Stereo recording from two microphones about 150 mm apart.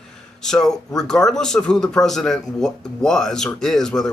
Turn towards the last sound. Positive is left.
turn(degrees=5)  # may be behind; listen again after turning